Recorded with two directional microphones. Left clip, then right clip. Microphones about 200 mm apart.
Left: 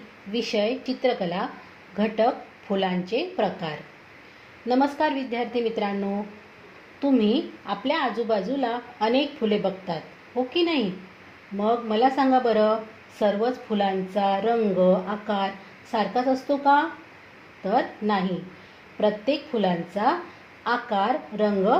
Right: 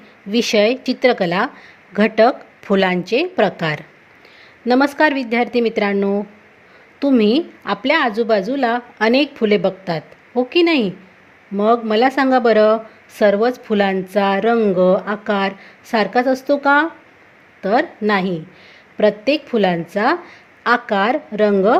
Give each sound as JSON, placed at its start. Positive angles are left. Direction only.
{"t": 0.3, "sound": "a woman's voice", "side_deg": -55}